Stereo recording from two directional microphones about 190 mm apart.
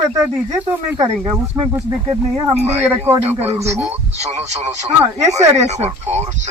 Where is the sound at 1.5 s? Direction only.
30° right (ahead or behind).